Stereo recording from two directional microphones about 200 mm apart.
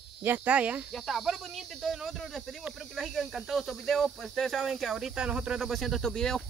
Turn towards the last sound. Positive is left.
turn(degrees=0)  # may be behind; listen again after turning